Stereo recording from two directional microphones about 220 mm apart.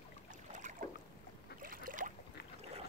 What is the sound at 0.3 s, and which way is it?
Boat, 35° right (ahead or behind).